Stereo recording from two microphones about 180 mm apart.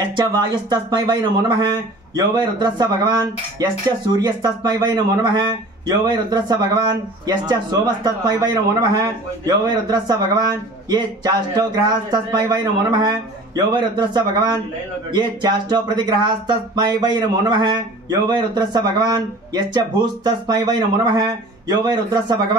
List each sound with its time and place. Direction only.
0.1 s speech: 25° right (ahead or behind)
2.1 s speech: 25° right (ahead or behind)